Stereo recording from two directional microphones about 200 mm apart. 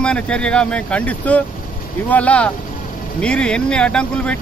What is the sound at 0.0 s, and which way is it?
Speech, 5° left (ahead or behind).